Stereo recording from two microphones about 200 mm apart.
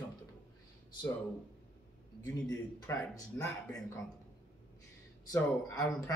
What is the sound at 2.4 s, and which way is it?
Speech, 15° left (ahead or behind).